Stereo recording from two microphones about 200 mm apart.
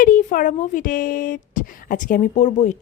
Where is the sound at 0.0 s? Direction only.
40° left (ahead or behind).